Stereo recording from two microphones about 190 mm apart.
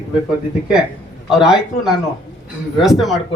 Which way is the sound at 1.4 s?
5° right (ahead or behind).